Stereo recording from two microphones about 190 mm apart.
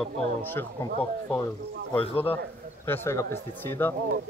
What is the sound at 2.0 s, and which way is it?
Speech, 30° left (ahead or behind).